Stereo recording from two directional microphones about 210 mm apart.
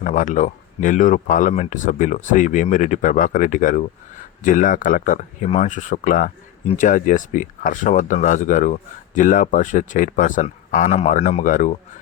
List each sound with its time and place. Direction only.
0.0 s speech: 35° left (ahead or behind)